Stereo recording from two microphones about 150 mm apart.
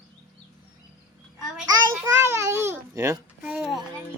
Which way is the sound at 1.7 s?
20° right (ahead or behind).